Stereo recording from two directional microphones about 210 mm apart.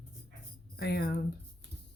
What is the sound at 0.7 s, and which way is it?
Speech, 50° left (ahead or behind).